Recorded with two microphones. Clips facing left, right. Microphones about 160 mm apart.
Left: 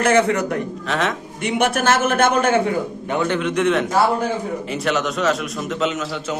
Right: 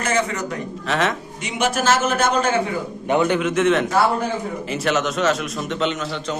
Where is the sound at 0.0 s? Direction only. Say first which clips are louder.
Left 6 dB; 60° left (ahead or behind).